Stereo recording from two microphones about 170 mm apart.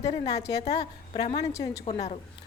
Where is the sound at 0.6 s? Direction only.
40° left (ahead or behind).